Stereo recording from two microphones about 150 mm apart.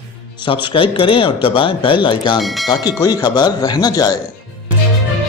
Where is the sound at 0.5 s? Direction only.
35° left (ahead or behind).